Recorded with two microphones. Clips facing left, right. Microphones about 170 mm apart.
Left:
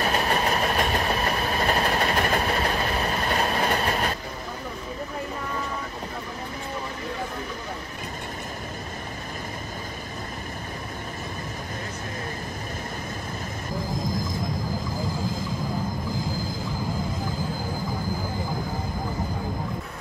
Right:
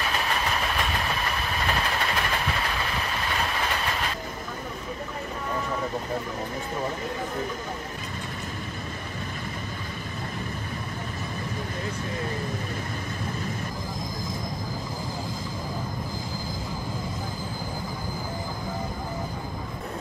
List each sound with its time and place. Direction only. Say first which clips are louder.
0.0 s train: left 4 dB; 40° left (ahead or behind)